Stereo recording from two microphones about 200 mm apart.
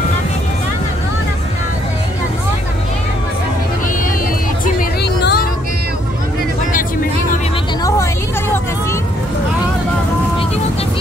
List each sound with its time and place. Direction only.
4.7 s music: 55° left (ahead or behind)